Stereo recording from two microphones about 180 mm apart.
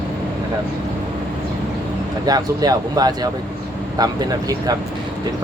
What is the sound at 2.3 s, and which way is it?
Speech, 20° right (ahead or behind).